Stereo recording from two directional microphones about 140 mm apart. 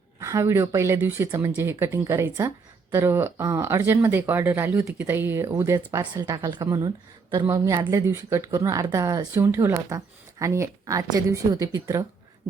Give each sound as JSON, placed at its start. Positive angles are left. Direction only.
{"t": 0.2, "sound": "speech", "side_deg": -20}